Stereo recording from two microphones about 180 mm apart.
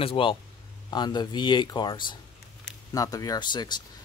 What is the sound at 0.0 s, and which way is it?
Speech, 30° left (ahead or behind).